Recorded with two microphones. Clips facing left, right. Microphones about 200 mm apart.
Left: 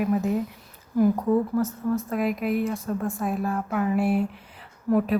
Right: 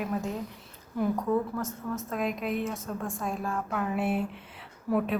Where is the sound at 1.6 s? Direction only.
Centre (ahead or behind).